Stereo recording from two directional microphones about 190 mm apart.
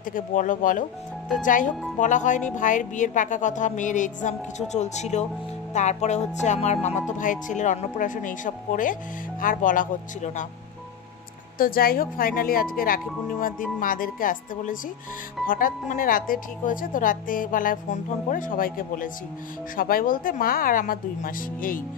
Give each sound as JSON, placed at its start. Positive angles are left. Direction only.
{"t": 0.1, "sound": "speech", "side_deg": 40}
{"t": 11.5, "sound": "speech", "side_deg": 50}